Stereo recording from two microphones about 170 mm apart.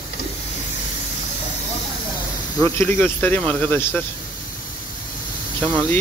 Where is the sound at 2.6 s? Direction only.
10° left (ahead or behind).